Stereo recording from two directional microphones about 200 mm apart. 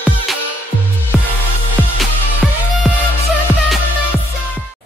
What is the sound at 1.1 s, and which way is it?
Music, 5° right (ahead or behind).